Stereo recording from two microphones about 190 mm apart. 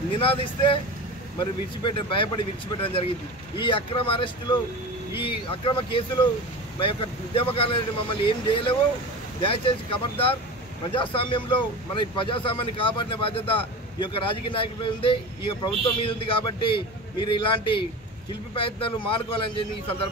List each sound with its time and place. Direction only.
0.2 s speech: 30° left (ahead or behind)